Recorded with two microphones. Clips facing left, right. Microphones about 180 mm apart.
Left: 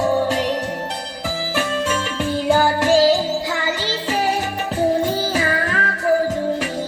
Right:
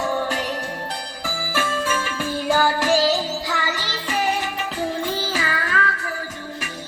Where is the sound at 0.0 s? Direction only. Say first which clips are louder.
Left 6 dB; 25° left (ahead or behind).